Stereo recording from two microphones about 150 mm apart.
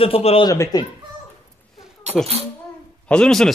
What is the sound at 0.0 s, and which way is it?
Speech, 40° left (ahead or behind).